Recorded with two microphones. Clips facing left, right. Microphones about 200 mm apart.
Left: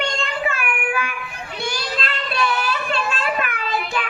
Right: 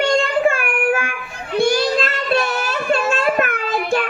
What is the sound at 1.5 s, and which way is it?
Child singing, 50° right (ahead or behind).